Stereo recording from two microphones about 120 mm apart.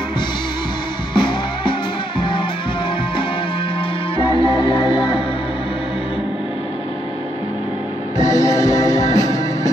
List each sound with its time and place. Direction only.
1.1 s music: 40° left (ahead or behind)
4.2 s music: 45° left (ahead or behind)
8.2 s music: 30° left (ahead or behind)